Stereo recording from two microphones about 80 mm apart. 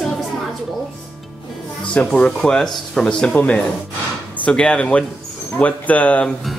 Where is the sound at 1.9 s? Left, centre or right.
Centre.